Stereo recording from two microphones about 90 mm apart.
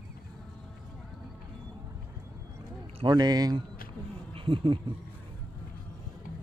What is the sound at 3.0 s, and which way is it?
Speech, 50° right (ahead or behind).